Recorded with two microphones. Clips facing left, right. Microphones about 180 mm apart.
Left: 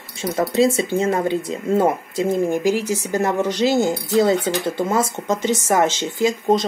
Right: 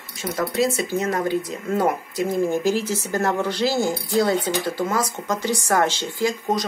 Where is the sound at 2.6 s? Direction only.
15° left (ahead or behind).